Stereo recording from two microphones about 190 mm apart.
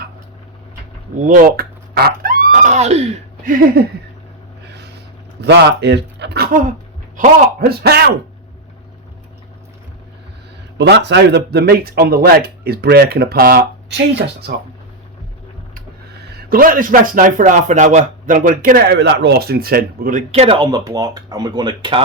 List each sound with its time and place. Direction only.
1.2 s speech: 45° right (ahead or behind)
3.5 s a man's voice: 50° right (ahead or behind)
4.6 s boat: 60° right (ahead or behind)
5.4 s speech: 60° right (ahead or behind)
10.8 s speech: 65° right (ahead or behind)
16.4 s a man's voice: 50° right (ahead or behind); by 22.0 s 25° right (ahead or behind)